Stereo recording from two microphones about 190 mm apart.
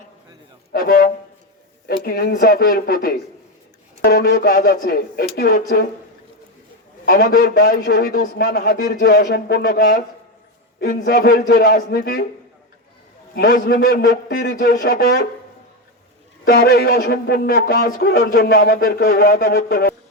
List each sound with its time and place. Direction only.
0.7 s a man's voice: 50° left (ahead or behind)
7.0 s speech: 55° left (ahead or behind)
13.3 s speech: 60° left (ahead or behind)
16.5 s speech: 55° left (ahead or behind)